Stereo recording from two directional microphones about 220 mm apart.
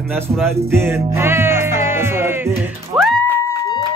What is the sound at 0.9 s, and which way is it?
Music, 10° right (ahead or behind).